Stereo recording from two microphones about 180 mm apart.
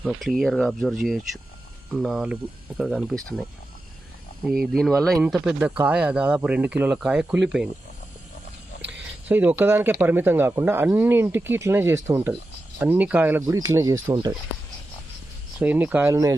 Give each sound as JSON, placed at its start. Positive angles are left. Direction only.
{"t": 0.0, "sound": "speech", "side_deg": 0}
{"t": 4.7, "sound": "speech", "side_deg": 0}
{"t": 8.9, "sound": "speech", "side_deg": -10}
{"t": 15.5, "sound": "speech", "side_deg": -10}